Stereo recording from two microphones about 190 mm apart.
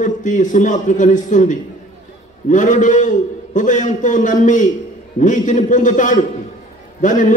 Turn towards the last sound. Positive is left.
turn(degrees=40)  # may be behind; listen again after turning